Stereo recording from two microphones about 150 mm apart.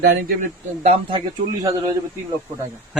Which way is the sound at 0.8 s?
40° right (ahead or behind).